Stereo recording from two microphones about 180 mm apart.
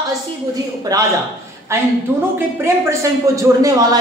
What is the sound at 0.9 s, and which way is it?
A woman's voice, 20° right (ahead or behind).